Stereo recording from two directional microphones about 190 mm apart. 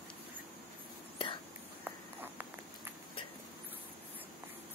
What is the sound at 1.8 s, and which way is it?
Walk, 10° right (ahead or behind).